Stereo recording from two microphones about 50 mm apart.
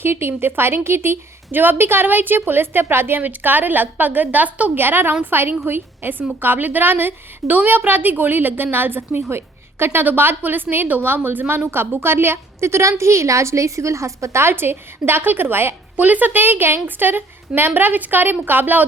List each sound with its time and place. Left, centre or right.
0.0 s a woman's voice: right
3.2 s a woman's voice: right
4.8 s a woman's voice: right
14.4 s a woman's voice: right
16.0 s a woman's voice: right